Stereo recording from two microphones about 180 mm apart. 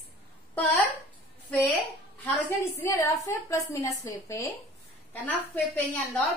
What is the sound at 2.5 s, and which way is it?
A woman's voice, 15° left (ahead or behind).